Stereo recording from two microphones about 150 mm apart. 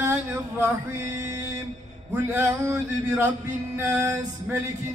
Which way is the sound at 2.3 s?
15° right (ahead or behind).